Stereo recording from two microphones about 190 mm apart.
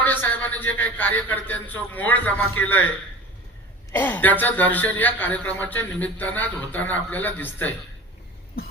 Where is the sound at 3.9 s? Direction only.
10° left (ahead or behind).